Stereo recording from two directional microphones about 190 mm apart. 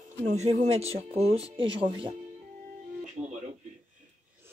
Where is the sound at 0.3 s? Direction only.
40° right (ahead or behind).